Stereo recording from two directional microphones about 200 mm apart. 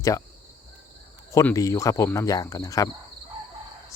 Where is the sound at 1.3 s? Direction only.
15° left (ahead or behind).